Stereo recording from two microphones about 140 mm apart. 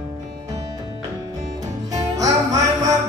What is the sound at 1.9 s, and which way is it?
Music, 25° right (ahead or behind).